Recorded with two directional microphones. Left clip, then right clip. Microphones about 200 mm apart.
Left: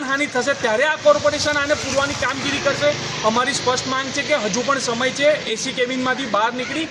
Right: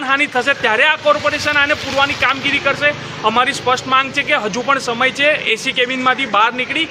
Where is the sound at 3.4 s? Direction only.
25° right (ahead or behind).